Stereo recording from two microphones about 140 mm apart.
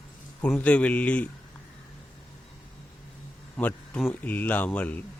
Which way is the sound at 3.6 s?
10° left (ahead or behind).